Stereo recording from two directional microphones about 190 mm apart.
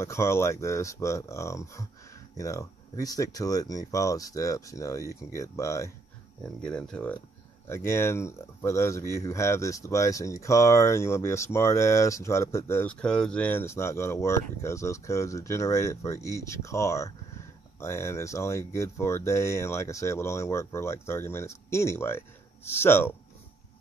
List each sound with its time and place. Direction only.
0.0 s speech: 15° left (ahead or behind)
6.4 s speech: 5° left (ahead or behind)